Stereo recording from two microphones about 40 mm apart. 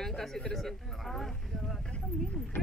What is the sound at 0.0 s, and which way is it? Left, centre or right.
Speech, centre.